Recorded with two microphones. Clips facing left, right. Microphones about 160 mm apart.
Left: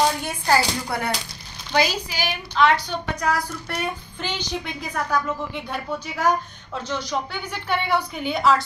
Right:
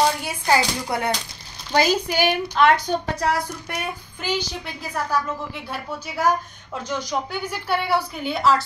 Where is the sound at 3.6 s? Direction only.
10° right (ahead or behind).